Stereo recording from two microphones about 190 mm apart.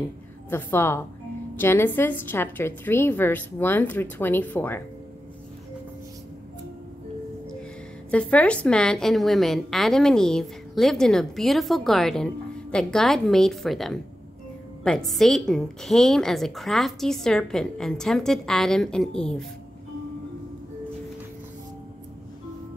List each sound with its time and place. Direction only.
0.5 s a woman's voice: 10° left (ahead or behind)
8.1 s a woman's voice: 5° left (ahead or behind)